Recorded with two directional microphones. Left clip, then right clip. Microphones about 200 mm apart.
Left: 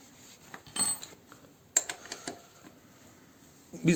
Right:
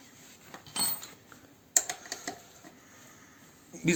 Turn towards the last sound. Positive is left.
turn(degrees=50)  # may be behind; listen again after turning